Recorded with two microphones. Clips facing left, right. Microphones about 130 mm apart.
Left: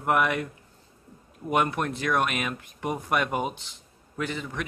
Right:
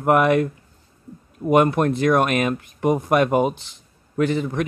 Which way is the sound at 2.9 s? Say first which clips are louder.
Right 10 dB; 20° right (ahead or behind).